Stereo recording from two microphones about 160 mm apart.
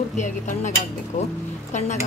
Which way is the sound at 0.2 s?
50° left (ahead or behind).